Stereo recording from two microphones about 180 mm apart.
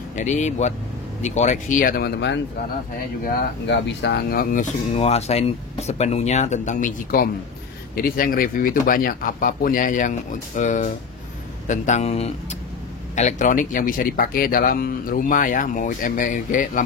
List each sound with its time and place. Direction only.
0.1 s speech: 45° left (ahead or behind); by 2.4 s 75° left (ahead or behind)
3.6 s speech: 75° left (ahead or behind); by 16.8 s 45° left (ahead or behind)